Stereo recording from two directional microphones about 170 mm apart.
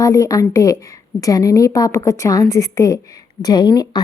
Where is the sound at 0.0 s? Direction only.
20° left (ahead or behind).